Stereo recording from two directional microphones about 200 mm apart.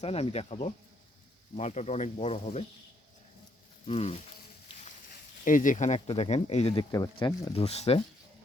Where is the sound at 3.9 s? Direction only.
30° left (ahead or behind).